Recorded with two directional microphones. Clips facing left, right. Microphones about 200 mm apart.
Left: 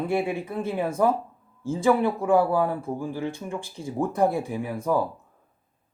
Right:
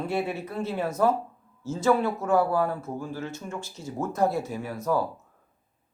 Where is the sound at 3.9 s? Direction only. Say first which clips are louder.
Left 2 dB; 15° left (ahead or behind).